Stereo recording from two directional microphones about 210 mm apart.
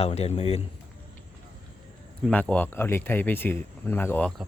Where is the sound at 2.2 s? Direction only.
5° left (ahead or behind).